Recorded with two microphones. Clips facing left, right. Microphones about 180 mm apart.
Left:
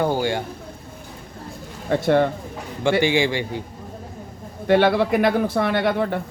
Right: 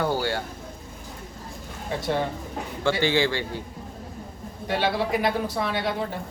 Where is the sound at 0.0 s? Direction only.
15° left (ahead or behind).